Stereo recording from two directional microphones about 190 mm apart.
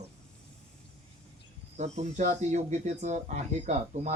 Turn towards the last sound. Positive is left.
turn(degrees=-35)  # may be behind; listen again after turning